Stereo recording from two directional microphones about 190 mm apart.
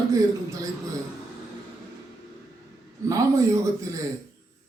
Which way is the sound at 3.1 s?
15° right (ahead or behind).